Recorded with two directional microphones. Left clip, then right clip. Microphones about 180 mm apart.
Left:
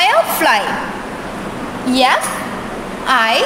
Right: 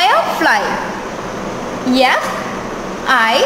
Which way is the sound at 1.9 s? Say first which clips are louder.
Even; 5° left (ahead or behind).